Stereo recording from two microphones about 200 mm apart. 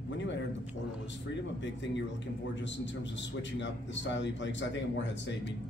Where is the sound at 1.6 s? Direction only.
65° left (ahead or behind).